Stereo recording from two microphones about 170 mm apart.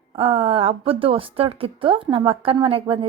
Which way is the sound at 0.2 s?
30° right (ahead or behind).